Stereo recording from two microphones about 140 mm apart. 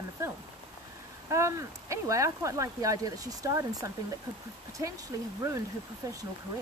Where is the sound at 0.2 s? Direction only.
20° right (ahead or behind).